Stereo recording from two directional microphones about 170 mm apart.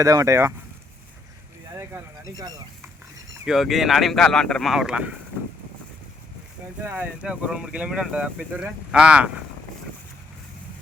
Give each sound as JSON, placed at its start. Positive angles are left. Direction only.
{"t": 0.0, "sound": "speech", "side_deg": -20}
{"t": 1.7, "sound": "speech", "side_deg": -20}
{"t": 3.4, "sound": "speech", "side_deg": 0}
{"t": 6.8, "sound": "speech", "side_deg": -10}